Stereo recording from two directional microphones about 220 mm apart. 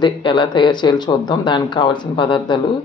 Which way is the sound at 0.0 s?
20° left (ahead or behind).